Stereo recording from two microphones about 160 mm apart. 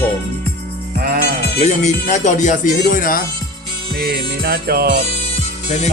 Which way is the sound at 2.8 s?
60° left (ahead or behind).